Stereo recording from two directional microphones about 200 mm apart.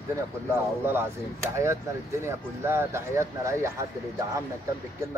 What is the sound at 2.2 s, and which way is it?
Speech, 10° right (ahead or behind).